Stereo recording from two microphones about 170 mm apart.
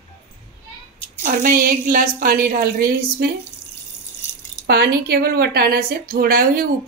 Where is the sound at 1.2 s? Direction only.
55° right (ahead or behind).